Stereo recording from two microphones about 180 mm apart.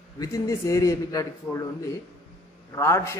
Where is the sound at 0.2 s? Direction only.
20° left (ahead or behind).